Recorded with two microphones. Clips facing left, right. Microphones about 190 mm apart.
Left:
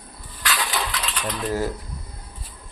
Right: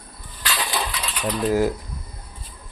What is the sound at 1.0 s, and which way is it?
Mechanisms, 10° right (ahead or behind).